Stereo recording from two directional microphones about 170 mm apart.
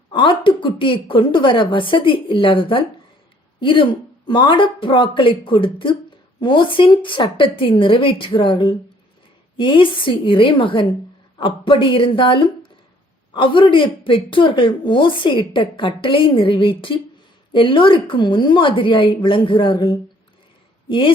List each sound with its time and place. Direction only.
0.1 s a woman's voice: 30° left (ahead or behind)